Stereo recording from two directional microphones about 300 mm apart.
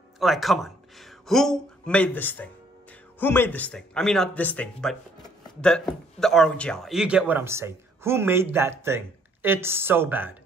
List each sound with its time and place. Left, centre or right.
0.2 s a man's voice: centre